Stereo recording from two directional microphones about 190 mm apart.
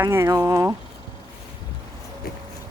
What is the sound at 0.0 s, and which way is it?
Speech, 15° right (ahead or behind).